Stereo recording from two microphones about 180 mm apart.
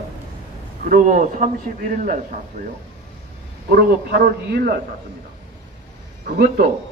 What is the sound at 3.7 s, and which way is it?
A man's voice, 60° right (ahead or behind).